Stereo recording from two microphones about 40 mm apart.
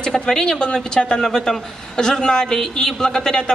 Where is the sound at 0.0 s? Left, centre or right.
Centre.